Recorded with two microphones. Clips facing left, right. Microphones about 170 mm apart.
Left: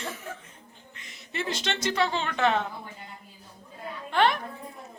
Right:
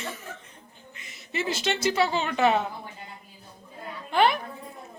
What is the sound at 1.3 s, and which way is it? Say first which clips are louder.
A woman's voice: right 3 dB; 5° right (ahead or behind).